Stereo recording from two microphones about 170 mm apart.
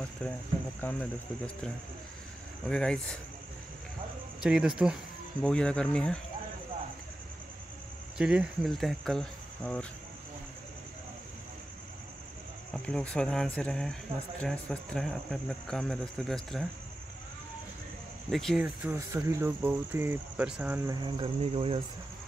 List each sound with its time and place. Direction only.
0.2 s speech: 5° left (ahead or behind)
2.6 s speech: 5° left (ahead or behind)
4.4 s speech: 5° right (ahead or behind)
8.2 s speech: 5° right (ahead or behind)
12.7 s speech: 5° left (ahead or behind)
18.3 s speech: centre (ahead or behind)
18.6 s speech: 10° right (ahead or behind)
20.9 s speech: 30° right (ahead or behind)